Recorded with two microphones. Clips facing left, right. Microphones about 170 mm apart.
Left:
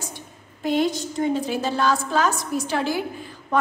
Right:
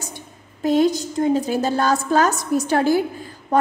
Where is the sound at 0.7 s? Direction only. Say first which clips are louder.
Right 5 dB; 40° right (ahead or behind).